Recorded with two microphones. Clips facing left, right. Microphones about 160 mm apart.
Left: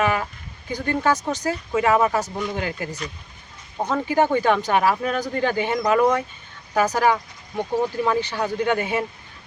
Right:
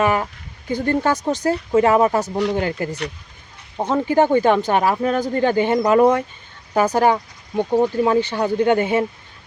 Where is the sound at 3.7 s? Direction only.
25° right (ahead or behind).